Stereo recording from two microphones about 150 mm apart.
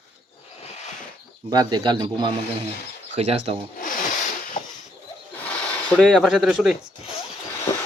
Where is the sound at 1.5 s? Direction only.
30° right (ahead or behind).